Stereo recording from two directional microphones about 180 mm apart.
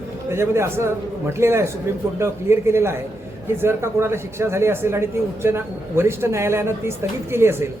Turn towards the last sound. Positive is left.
turn(degrees=-15)  # may be behind; listen again after turning